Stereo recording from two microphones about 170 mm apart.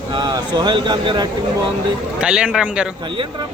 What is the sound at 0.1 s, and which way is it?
Speech, 25° right (ahead or behind).